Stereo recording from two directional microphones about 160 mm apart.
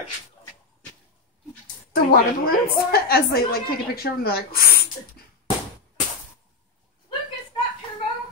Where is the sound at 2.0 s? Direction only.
65° left (ahead or behind).